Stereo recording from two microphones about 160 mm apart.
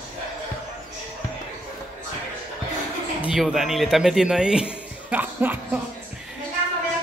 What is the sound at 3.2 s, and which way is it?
A man's voice, 5° right (ahead or behind).